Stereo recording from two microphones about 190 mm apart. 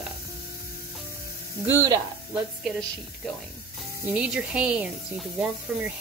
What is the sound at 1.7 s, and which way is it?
Speech, 20° right (ahead or behind).